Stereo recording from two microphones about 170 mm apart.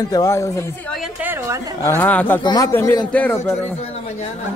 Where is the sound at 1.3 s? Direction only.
15° right (ahead or behind).